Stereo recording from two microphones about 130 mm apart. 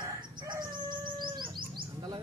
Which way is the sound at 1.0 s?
40° right (ahead or behind).